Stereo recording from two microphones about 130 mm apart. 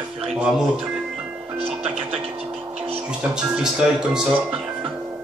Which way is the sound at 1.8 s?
10° right (ahead or behind).